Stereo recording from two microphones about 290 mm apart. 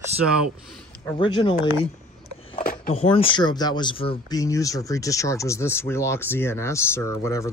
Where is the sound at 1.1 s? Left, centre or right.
Centre.